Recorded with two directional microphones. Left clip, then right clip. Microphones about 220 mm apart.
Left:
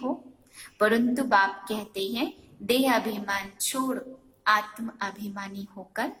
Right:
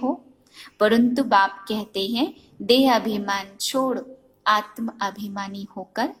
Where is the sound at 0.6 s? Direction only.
40° right (ahead or behind).